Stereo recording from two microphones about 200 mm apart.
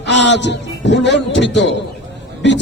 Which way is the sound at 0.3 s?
60° left (ahead or behind).